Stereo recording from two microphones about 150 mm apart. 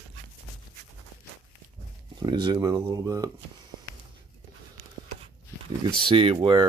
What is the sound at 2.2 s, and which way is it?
Speech, 30° right (ahead or behind).